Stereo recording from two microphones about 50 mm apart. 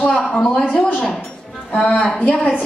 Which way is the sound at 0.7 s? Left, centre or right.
Left.